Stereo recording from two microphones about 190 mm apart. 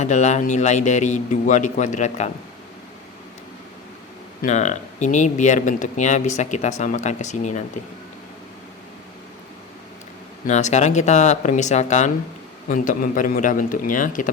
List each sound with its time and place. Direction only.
0.0 s speech: 40° left (ahead or behind)
4.4 s speech: 40° left (ahead or behind)
10.4 s speech: 40° left (ahead or behind)